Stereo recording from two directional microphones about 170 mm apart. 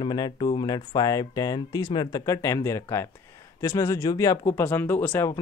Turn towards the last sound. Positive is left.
turn(degrees=10)  # may be behind; listen again after turning